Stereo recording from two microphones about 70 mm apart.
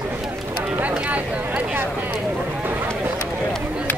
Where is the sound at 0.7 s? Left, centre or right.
Right.